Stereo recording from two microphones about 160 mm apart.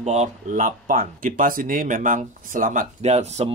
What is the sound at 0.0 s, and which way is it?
Speech, 45° right (ahead or behind).